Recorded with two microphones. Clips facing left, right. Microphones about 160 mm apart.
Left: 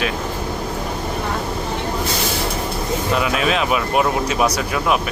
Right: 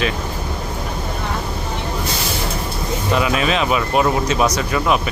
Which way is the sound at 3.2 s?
Centre (ahead or behind).